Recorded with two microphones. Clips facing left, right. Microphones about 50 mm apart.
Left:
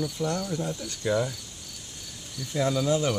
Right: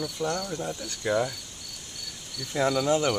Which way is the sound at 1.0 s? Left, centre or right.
Centre.